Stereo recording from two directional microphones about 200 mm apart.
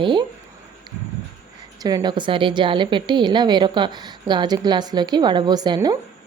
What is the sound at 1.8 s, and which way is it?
A woman's voice, 20° right (ahead or behind).